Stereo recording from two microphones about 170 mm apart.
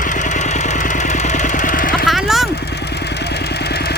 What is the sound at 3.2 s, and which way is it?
Vehicle, 70° left (ahead or behind).